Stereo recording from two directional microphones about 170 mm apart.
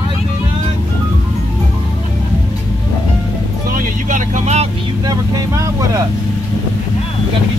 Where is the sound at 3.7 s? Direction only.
50° right (ahead or behind).